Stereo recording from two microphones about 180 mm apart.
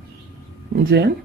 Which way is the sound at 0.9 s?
70° right (ahead or behind).